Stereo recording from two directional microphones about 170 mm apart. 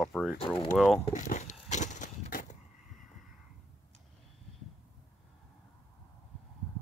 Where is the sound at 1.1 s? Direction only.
45° left (ahead or behind).